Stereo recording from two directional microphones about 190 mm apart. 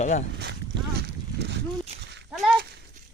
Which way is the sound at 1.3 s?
65° right (ahead or behind).